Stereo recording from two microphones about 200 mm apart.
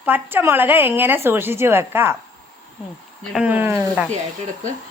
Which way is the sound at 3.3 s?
5° right (ahead or behind).